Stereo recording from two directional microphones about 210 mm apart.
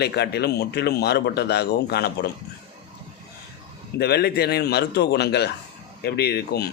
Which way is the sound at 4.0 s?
50° left (ahead or behind).